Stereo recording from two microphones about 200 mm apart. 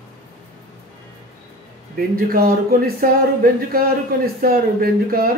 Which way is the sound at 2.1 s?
50° right (ahead or behind).